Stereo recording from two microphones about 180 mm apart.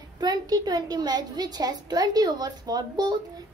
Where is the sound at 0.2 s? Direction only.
20° right (ahead or behind).